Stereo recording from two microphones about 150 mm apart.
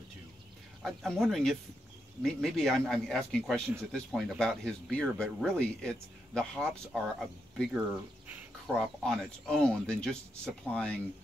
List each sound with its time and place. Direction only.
0.8 s speech: centre (ahead or behind)
9.0 s speech: 5° left (ahead or behind)